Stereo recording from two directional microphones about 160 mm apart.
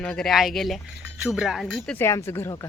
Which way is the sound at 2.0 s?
15° left (ahead or behind).